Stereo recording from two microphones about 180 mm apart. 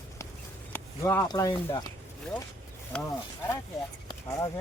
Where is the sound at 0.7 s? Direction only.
15° left (ahead or behind).